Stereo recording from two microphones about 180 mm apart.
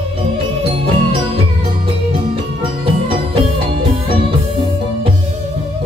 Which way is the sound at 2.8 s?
30° right (ahead or behind).